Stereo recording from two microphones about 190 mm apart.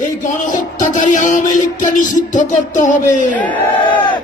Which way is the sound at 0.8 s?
40° left (ahead or behind).